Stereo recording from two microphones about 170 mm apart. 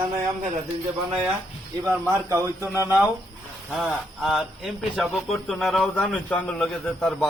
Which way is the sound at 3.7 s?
Centre (ahead or behind).